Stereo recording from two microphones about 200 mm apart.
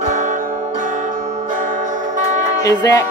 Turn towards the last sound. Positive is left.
turn(degrees=20)  # may be behind; listen again after turning